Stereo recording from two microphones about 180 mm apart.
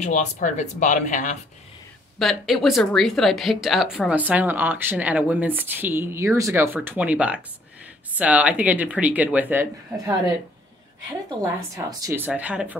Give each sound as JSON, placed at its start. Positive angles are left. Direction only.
{"t": 0.0, "sound": "speech", "side_deg": 40}
{"t": 2.1, "sound": "speech", "side_deg": 0}
{"t": 11.7, "sound": "speech", "side_deg": -15}